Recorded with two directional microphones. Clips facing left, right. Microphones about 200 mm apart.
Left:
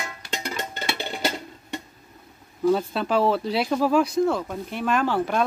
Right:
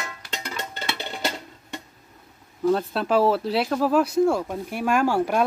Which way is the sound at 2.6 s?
Centre (ahead or behind).